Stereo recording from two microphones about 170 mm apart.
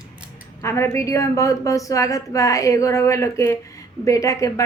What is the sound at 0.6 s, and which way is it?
A woman's voice, 15° left (ahead or behind).